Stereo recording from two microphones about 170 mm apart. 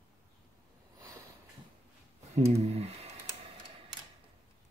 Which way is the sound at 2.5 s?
40° right (ahead or behind).